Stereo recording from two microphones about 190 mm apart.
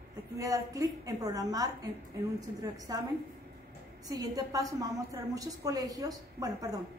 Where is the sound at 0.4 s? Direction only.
15° right (ahead or behind).